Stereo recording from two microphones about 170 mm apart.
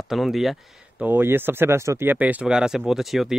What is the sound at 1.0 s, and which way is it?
Speech, 10° right (ahead or behind).